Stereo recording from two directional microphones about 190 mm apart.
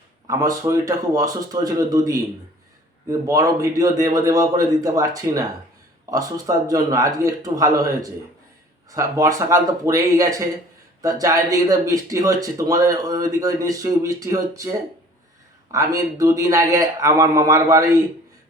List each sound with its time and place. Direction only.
0.3 s speech: 15° right (ahead or behind)
8.9 s speech: 15° right (ahead or behind)